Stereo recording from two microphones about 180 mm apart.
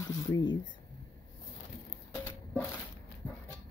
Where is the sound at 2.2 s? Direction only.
10° left (ahead or behind).